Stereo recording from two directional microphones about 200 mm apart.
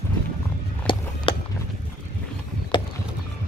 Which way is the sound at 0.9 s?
25° left (ahead or behind).